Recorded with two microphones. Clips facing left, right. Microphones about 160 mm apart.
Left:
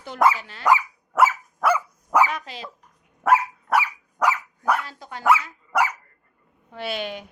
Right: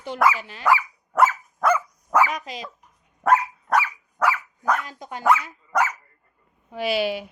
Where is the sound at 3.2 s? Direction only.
5° left (ahead or behind).